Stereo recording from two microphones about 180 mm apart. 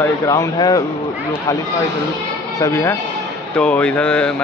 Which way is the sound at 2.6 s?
15° left (ahead or behind).